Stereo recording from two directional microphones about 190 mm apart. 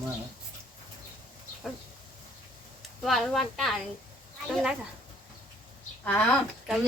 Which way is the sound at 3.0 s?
Centre (ahead or behind).